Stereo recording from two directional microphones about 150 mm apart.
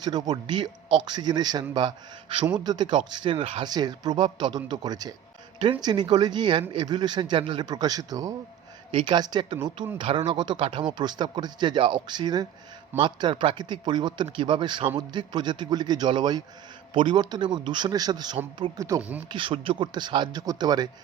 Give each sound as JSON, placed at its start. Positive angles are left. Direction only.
{"t": 0.0, "sound": "speech", "side_deg": -25}
{"t": 3.7, "sound": "speech", "side_deg": -25}
{"t": 19.3, "sound": "speech", "side_deg": -35}